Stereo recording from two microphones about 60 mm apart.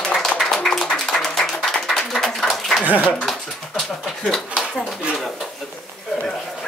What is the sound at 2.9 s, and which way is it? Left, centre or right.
Speech, right.